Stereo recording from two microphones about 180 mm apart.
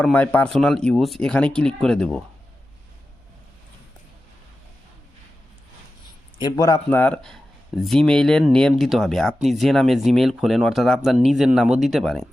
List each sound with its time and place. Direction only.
0.0 s speech: 10° left (ahead or behind)
6.4 s speech: 20° left (ahead or behind)
6.9 s speech: 10° left (ahead or behind)